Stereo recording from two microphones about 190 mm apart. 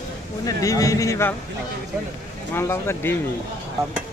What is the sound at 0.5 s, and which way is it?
Speech, 20° left (ahead or behind).